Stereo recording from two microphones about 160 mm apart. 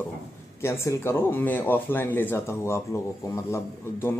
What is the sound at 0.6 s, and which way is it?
Speech, 15° left (ahead or behind).